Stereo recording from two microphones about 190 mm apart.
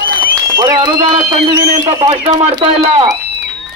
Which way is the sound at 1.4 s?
35° right (ahead or behind).